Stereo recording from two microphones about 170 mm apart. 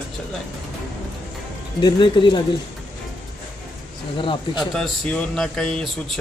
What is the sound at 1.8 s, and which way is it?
Speech, 30° left (ahead or behind).